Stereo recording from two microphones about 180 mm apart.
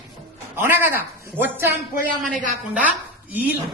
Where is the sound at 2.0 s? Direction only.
45° right (ahead or behind).